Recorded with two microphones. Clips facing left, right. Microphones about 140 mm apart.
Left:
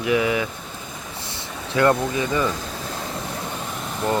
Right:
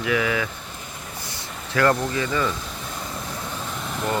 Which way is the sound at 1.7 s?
20° left (ahead or behind).